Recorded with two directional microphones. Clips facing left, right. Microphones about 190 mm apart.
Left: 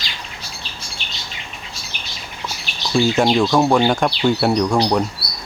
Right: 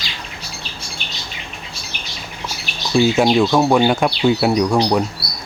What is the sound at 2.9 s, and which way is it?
Speech, 5° right (ahead or behind).